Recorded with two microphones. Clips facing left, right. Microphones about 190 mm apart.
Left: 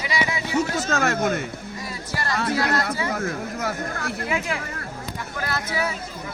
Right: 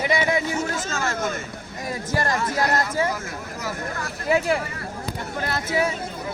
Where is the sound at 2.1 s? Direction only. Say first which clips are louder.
Right 5 dB; 50° right (ahead or behind).